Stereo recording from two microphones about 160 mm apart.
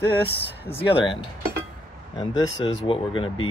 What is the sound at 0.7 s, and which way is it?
Speech, 35° left (ahead or behind).